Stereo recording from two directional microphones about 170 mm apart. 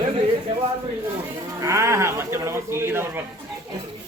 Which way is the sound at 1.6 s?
15° right (ahead or behind).